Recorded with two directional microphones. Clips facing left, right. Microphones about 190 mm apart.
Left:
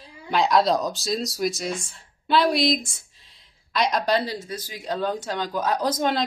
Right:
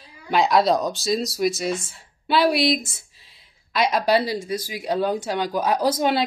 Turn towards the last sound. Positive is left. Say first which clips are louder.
# right 3 dB
turn(degrees=-10)  # may be behind; listen again after turning